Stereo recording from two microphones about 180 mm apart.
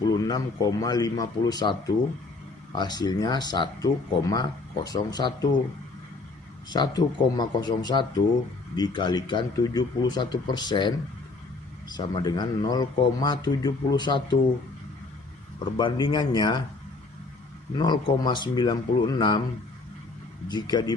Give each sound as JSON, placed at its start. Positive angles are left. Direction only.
{"t": 0.2, "sound": "speech", "side_deg": 20}
{"t": 2.7, "sound": "speech", "side_deg": 25}
{"t": 6.7, "sound": "speech", "side_deg": 25}
{"t": 15.8, "sound": "speech", "side_deg": 25}
{"t": 17.7, "sound": "speech", "side_deg": 25}
{"t": 20.5, "sound": "speech", "side_deg": 25}